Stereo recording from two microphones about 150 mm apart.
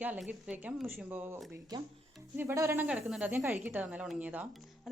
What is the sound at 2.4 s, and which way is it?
A woman's voice, 15° right (ahead or behind).